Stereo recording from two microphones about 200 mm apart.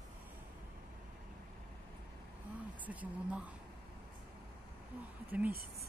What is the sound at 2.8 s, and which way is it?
Speech, 5° right (ahead or behind).